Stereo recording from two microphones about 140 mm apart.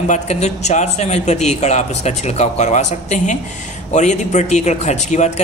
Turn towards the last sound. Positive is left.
turn(degrees=55)  # may be behind; listen again after turning